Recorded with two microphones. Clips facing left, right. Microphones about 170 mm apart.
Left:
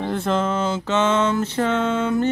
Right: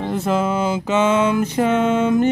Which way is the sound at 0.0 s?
5° right (ahead or behind).